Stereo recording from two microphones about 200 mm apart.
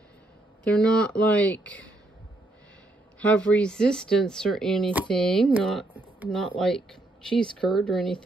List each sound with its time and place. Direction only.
0.7 s speech: 5° left (ahead or behind)
3.2 s speech: 5° left (ahead or behind)
5.9 s a sound: 10° right (ahead or behind)
6.3 s speech: centre (ahead or behind)